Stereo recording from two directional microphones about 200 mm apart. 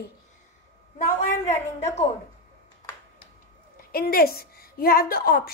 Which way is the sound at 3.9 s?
50° left (ahead or behind).